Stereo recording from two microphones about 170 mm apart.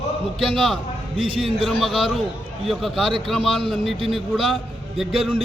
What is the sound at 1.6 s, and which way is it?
A man's voice, centre (ahead or behind).